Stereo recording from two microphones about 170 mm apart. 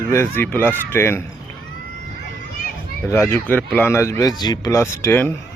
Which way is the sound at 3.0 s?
15° left (ahead or behind).